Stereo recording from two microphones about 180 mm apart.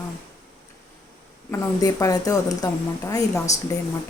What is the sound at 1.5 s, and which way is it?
A woman's voice, 15° left (ahead or behind).